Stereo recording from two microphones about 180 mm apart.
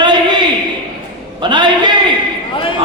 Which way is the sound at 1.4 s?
25° right (ahead or behind).